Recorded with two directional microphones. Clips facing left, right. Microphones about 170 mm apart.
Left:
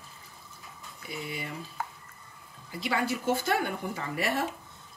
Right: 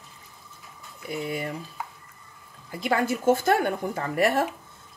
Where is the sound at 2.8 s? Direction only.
50° right (ahead or behind).